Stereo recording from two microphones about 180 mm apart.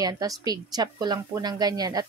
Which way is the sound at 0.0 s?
20° right (ahead or behind).